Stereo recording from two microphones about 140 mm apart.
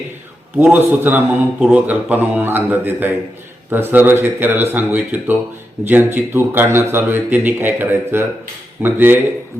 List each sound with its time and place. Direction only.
0.5 s speech: 15° right (ahead or behind)